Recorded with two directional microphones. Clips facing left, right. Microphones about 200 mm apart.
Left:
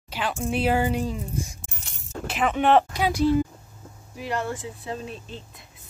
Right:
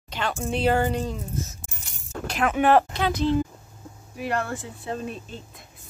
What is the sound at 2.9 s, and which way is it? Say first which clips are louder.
Speech: left 2 dB; 10° left (ahead or behind).